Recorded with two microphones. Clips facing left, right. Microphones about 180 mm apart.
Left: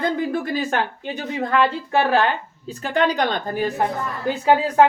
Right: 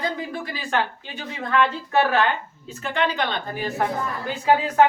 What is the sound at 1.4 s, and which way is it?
Speech, 30° left (ahead or behind).